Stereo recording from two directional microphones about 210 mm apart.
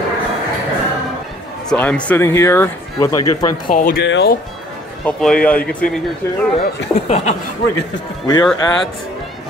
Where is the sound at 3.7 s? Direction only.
40° left (ahead or behind).